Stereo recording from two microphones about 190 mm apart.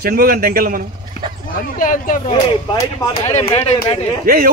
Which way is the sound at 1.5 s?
45° left (ahead or behind).